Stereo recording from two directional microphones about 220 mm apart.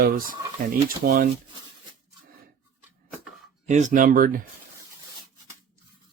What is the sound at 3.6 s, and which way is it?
Speech, 30° right (ahead or behind).